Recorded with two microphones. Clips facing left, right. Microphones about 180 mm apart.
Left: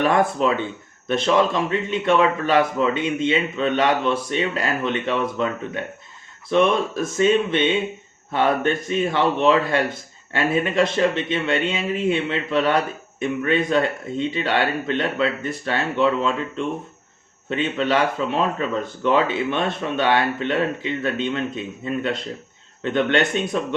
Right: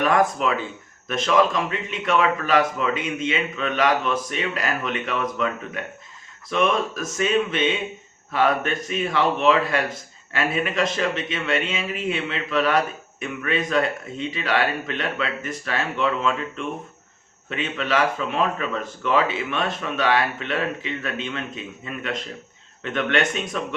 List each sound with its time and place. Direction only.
0.0 s speech: 30° left (ahead or behind)